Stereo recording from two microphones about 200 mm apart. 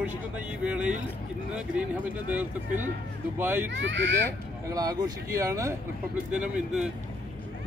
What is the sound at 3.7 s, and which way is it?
Speech, 65° right (ahead or behind).